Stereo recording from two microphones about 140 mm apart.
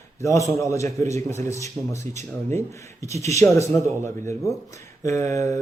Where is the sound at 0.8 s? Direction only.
55° right (ahead or behind).